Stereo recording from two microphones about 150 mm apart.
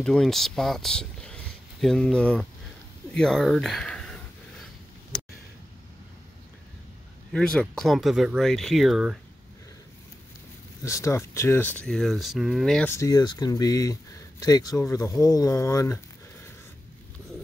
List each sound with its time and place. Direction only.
0.0 s speech: 5° left (ahead or behind)
7.3 s speech: 5° left (ahead or behind)
10.8 s speech: 20° left (ahead or behind); by 12.8 s centre (ahead or behind)
12.8 s speech: 20° left (ahead or behind)